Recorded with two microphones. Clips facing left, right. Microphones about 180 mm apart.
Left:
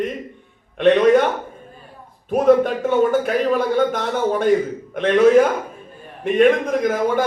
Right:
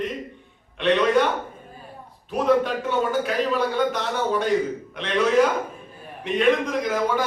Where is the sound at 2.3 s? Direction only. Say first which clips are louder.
Left 6 dB; 50° left (ahead or behind).